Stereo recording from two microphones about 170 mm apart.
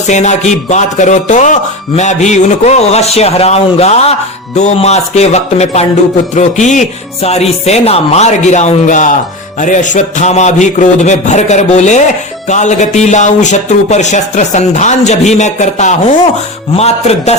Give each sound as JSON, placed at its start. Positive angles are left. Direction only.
{"t": 0.1, "sound": "a man's voice", "side_deg": 45}